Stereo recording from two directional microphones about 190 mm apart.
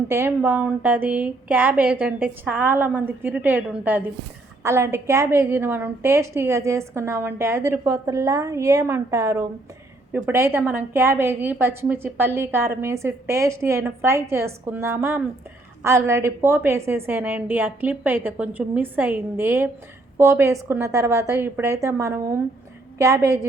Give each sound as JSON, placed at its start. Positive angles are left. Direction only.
{"t": 0.1, "sound": "a woman's voice", "side_deg": -10}